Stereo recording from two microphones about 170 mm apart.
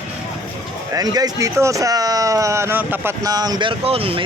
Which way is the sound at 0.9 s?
20° right (ahead or behind).